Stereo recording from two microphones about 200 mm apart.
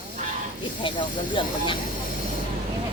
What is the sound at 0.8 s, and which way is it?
Speech, 25° left (ahead or behind).